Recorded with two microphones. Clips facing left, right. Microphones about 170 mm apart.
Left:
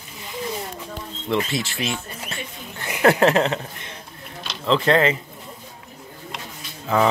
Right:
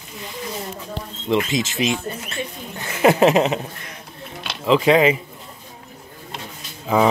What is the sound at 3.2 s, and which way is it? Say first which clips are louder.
Speech: right 2 dB; 15° right (ahead or behind).